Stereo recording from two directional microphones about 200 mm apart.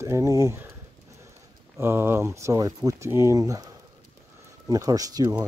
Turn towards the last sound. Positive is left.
turn(degrees=-20)  # may be behind; listen again after turning